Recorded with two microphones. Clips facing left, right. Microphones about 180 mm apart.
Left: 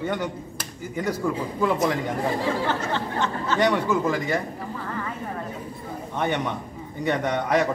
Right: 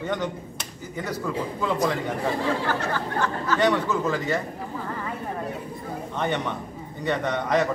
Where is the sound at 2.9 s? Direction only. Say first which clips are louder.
Even; 25° left (ahead or behind).